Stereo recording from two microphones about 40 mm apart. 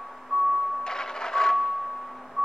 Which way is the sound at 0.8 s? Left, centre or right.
Centre.